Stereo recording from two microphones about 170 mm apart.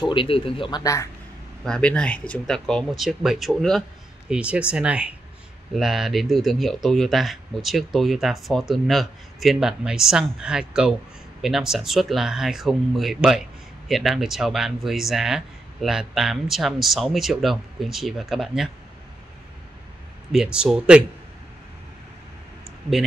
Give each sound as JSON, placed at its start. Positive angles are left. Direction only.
{"t": 0.0, "sound": "speech", "side_deg": 30}
{"t": 1.6, "sound": "speech", "side_deg": 5}
{"t": 20.5, "sound": "speech", "side_deg": -5}